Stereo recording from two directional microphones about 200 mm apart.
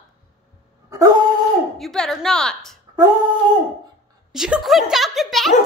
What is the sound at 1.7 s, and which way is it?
A child's voice, centre (ahead or behind).